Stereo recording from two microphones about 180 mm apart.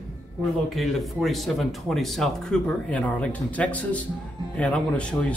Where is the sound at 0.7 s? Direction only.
Centre (ahead or behind).